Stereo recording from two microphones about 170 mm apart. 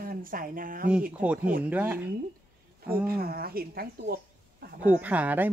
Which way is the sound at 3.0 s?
65° right (ahead or behind).